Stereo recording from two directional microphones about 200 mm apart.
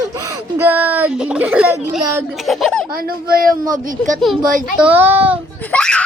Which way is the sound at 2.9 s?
50° right (ahead or behind).